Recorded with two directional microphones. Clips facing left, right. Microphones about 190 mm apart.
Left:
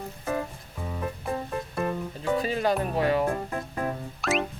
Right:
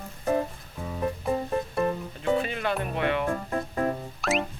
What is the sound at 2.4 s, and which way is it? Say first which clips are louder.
Speech: left 3 dB; 35° left (ahead or behind).